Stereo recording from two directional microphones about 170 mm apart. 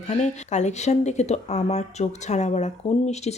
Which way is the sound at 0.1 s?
45° left (ahead or behind).